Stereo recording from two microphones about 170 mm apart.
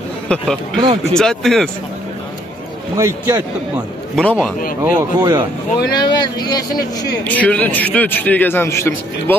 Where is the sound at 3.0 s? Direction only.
15° right (ahead or behind).